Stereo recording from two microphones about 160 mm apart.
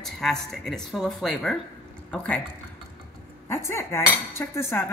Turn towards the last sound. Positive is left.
turn(degrees=15)  # may be behind; listen again after turning